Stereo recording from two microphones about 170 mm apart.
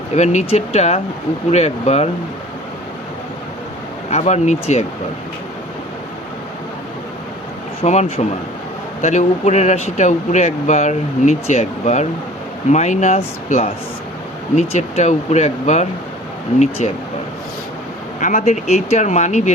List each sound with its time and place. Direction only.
0.1 s speech: 40° left (ahead or behind)
4.1 s speech: 40° left (ahead or behind)
7.8 s speech: 40° left (ahead or behind)
18.2 s speech: 45° left (ahead or behind)